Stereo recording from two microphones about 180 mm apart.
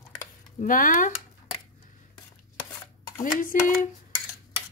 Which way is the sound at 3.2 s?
50° left (ahead or behind).